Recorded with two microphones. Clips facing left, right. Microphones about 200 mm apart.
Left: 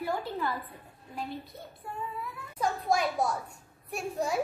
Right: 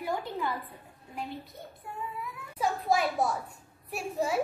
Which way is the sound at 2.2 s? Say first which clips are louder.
Right 1 dB; 5° right (ahead or behind).